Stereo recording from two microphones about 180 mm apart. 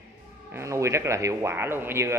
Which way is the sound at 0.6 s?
15° right (ahead or behind).